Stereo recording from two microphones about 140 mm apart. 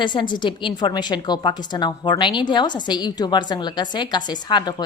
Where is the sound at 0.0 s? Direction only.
35° left (ahead or behind).